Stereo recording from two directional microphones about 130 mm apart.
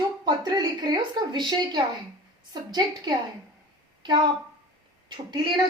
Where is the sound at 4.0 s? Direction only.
35° right (ahead or behind).